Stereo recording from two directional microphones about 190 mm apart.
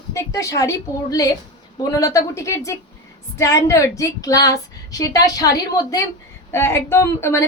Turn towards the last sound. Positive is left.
turn(degrees=15)  # may be behind; listen again after turning